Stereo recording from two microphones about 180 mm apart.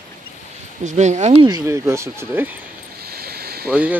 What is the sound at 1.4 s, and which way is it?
Speech, 20° right (ahead or behind).